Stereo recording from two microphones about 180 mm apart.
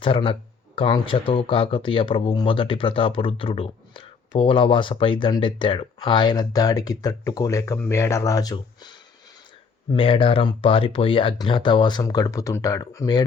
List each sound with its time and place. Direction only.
0.0 s speech: 30° left (ahead or behind)